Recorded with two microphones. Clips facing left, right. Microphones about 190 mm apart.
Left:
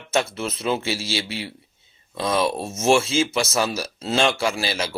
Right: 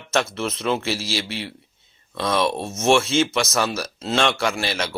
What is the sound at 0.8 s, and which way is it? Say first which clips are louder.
Speech: even; 30° left (ahead or behind).